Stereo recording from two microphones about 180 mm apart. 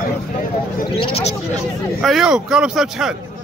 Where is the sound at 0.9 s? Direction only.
30° left (ahead or behind).